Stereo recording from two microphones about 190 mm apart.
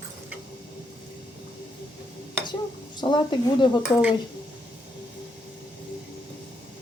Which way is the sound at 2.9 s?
25° left (ahead or behind).